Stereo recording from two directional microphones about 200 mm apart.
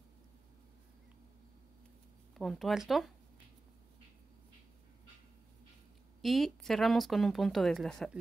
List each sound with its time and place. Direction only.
2.3 s speech: centre (ahead or behind)
6.2 s speech: centre (ahead or behind)